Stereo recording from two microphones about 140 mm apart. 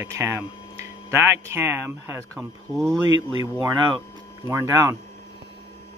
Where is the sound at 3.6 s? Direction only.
35° right (ahead or behind).